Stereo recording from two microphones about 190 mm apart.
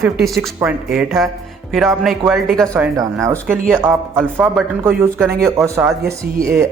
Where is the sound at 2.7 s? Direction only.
15° right (ahead or behind).